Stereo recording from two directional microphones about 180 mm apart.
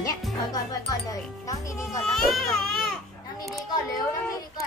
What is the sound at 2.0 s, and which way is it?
Speech, centre (ahead or behind).